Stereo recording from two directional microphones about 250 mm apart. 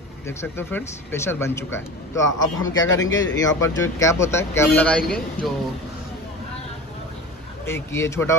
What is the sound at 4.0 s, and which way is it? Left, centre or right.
Speech, centre.